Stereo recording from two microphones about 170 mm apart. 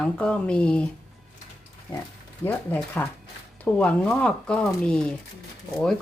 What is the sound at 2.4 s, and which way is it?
A woman's voice, 10° left (ahead or behind).